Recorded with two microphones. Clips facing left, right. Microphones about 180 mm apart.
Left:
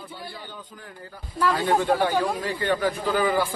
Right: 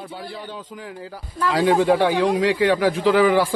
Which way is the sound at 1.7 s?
90° right.